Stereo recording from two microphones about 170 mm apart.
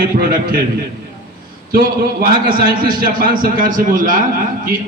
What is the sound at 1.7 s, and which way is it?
A man's voice, 60° right (ahead or behind).